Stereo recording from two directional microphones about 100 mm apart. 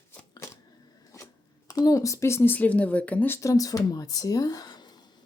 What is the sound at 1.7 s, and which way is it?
Speech, 35° left (ahead or behind).